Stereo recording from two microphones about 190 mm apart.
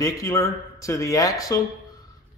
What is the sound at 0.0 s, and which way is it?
A man's voice, 15° left (ahead or behind).